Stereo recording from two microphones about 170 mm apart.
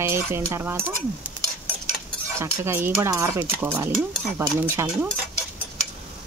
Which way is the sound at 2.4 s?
15° right (ahead or behind).